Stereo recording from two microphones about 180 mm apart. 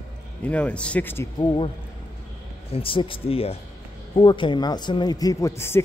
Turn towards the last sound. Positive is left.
turn(degrees=15)  # may be behind; listen again after turning